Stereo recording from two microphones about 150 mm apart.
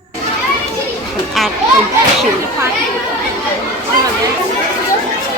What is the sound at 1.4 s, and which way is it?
Speech, centre (ahead or behind).